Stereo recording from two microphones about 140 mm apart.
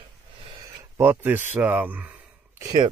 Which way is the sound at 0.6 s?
20° right (ahead or behind).